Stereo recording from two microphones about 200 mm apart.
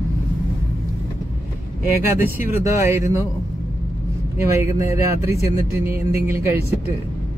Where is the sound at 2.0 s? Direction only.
10° right (ahead or behind).